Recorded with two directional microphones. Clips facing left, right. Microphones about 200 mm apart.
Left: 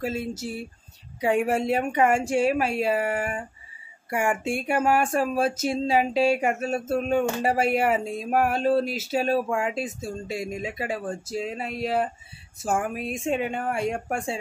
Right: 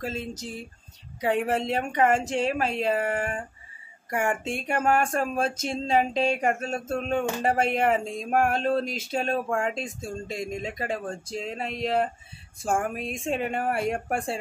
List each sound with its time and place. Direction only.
0.0 s speech: 10° left (ahead or behind)